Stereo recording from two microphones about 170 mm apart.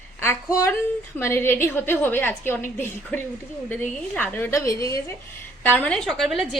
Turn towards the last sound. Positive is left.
turn(degrees=0)  # may be behind; listen again after turning